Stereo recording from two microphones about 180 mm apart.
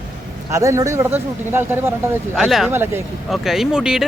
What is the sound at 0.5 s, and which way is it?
Speech, 15° right (ahead or behind).